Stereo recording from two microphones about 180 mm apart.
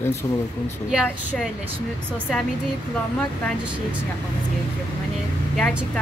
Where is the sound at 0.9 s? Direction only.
5° right (ahead or behind).